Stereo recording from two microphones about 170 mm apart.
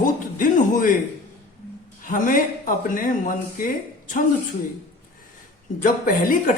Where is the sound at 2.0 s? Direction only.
50° left (ahead or behind).